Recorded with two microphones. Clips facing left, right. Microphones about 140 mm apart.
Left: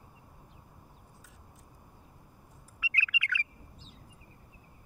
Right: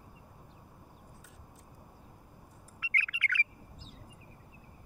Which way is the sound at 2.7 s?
45° right (ahead or behind).